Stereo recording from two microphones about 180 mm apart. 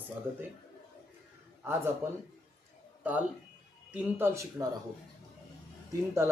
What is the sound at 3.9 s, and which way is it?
Speech, 15° right (ahead or behind).